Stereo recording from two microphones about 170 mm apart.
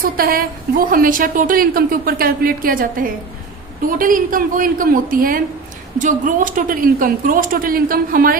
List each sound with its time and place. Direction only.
0.0 s a woman's voice: 60° right (ahead or behind)